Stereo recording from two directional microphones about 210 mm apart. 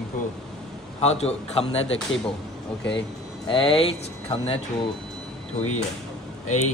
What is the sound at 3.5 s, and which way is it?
Speech, 25° left (ahead or behind).